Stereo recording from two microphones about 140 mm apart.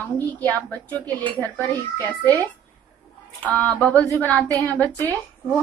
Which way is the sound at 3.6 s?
10° left (ahead or behind).